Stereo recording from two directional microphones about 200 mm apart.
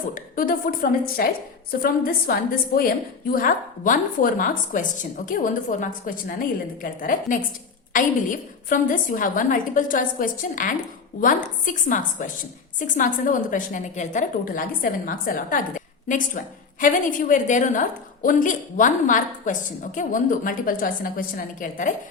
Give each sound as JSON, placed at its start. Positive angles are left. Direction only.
{"t": 0.1, "sound": "a woman's voice", "side_deg": 45}
{"t": 3.3, "sound": "a woman's voice", "side_deg": 45}